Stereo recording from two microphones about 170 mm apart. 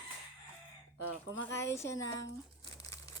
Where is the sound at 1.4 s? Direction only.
15° left (ahead or behind).